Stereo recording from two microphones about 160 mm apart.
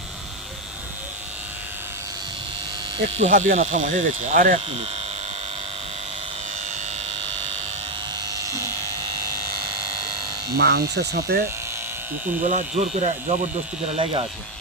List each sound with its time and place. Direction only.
3.2 s speech: 50° right (ahead or behind)
10.5 s speech: 80° right
12.4 s speech: 50° right (ahead or behind)
13.9 s speech: 35° right (ahead or behind)